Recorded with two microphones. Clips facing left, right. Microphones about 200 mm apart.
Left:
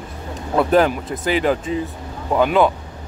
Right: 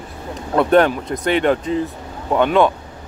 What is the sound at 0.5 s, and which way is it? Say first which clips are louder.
Speech: right 2 dB; 5° left (ahead or behind).